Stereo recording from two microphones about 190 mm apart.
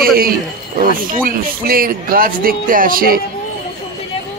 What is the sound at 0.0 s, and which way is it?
A man's voice, 50° right (ahead or behind).